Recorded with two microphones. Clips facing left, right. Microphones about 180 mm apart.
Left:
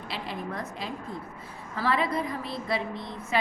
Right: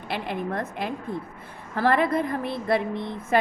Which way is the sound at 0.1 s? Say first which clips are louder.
Right 6 dB; 55° right (ahead or behind).